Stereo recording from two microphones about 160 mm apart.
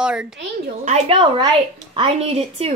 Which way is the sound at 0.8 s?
40° right (ahead or behind).